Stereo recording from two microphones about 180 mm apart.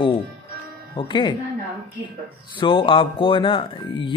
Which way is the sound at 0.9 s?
25° left (ahead or behind).